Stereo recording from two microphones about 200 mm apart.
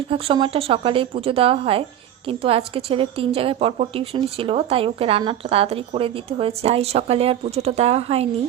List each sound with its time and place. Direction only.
0.1 s a woman's voice: 25° right (ahead or behind)